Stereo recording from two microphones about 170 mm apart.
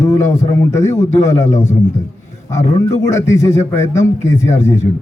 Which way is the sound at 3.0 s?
15° left (ahead or behind).